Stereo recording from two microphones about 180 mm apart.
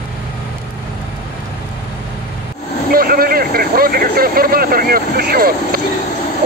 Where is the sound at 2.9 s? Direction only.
55° right (ahead or behind).